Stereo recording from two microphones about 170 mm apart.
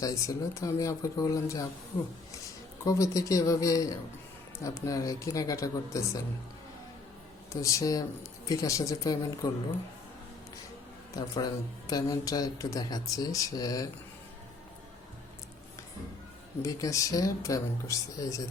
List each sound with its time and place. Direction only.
0.0 s speech: 20° left (ahead or behind)
2.8 s speech: 20° left (ahead or behind)
7.5 s speech: 20° left (ahead or behind)
11.1 s speech: 25° left (ahead or behind)
16.6 s speech: 20° left (ahead or behind)